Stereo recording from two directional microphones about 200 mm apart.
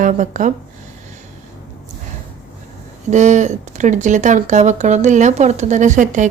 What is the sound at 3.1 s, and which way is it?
Speech, 35° right (ahead or behind).